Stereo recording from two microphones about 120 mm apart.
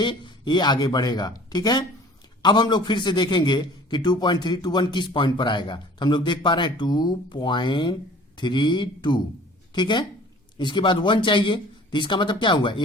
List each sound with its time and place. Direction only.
0.0 s a man's voice: 40° left (ahead or behind)